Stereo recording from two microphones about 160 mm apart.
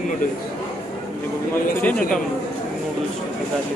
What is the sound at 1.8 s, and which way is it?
Speech, 10° left (ahead or behind).